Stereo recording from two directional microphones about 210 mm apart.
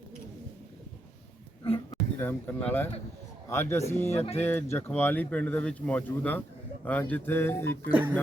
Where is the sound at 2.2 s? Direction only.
10° left (ahead or behind).